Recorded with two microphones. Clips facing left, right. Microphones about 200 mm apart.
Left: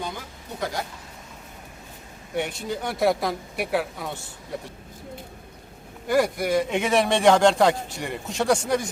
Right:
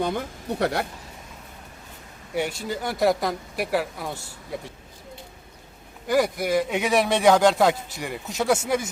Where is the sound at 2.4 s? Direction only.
5° right (ahead or behind).